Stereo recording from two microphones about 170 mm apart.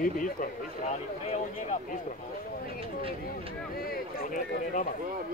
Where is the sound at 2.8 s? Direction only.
35° right (ahead or behind).